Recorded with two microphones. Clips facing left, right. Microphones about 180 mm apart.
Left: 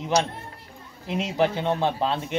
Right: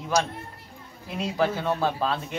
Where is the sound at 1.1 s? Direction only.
20° left (ahead or behind).